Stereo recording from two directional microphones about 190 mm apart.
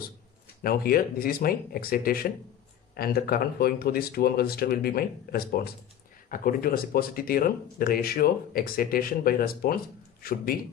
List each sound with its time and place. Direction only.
0.7 s speech: 50° left (ahead or behind)